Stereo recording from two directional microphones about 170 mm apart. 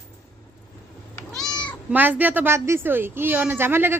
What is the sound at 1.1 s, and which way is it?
Cat, 5° left (ahead or behind).